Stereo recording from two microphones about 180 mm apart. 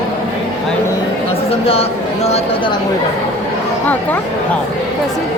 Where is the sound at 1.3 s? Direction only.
30° left (ahead or behind).